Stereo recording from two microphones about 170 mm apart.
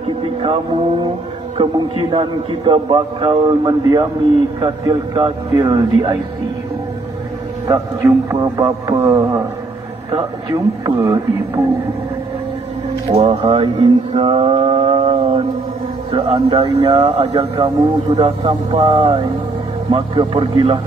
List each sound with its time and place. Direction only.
0.2 s a man's voice: 30° right (ahead or behind)
7.6 s a man's voice: 20° right (ahead or behind)
10.5 s a man's voice: 20° right (ahead or behind)
13.1 s mantra: 35° right (ahead or behind)
16.1 s a man's voice: 30° right (ahead or behind)